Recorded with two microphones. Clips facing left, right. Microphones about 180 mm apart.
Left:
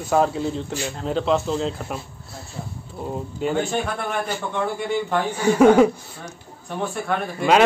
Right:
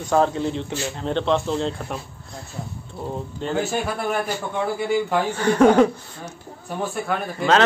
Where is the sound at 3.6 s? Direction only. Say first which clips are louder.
Even; 5° right (ahead or behind).